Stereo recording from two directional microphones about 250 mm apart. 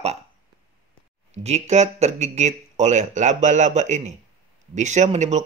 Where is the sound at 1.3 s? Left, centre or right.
Right.